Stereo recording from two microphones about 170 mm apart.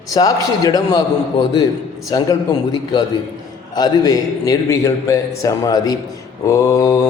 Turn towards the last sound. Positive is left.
turn(degrees=20)  # may be behind; listen again after turning